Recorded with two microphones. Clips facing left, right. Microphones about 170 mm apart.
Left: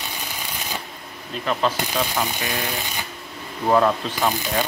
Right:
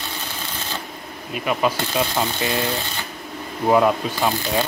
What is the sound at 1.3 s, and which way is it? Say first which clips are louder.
Speech: right 1 dB; 10° right (ahead or behind).